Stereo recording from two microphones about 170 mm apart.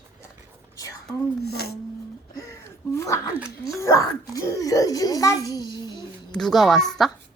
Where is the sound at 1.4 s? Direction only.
70° left (ahead or behind).